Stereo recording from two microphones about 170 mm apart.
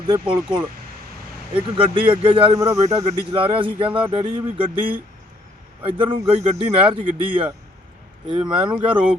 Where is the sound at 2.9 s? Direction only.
20° right (ahead or behind).